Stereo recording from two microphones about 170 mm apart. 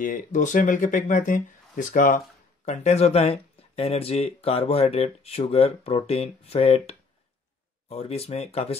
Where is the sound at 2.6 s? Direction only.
40° left (ahead or behind).